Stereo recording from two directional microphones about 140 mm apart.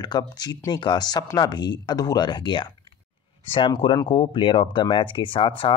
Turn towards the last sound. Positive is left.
turn(degrees=40)  # may be behind; listen again after turning